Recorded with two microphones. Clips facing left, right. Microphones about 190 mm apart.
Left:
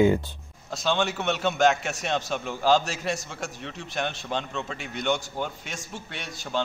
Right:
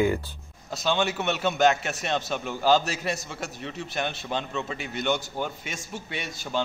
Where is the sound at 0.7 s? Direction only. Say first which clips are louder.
Even; 5° right (ahead or behind).